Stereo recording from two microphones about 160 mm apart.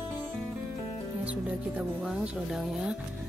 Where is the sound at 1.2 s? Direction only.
10° right (ahead or behind).